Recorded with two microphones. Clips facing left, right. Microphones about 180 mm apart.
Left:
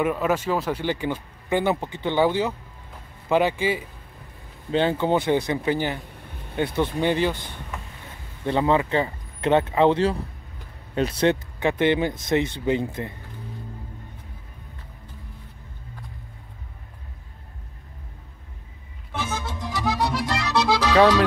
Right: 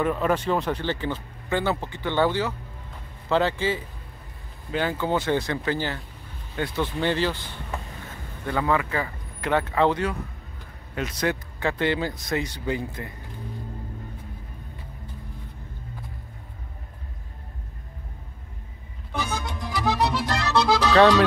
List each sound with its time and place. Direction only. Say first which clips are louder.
0.0 s speech: left 1 dB; 5° left (ahead or behind)
4.6 s speech: left 4 dB; 25° left (ahead or behind)
8.5 s speech: left 4 dB; 25° left (ahead or behind)
19.1 s music: even; centre (ahead or behind)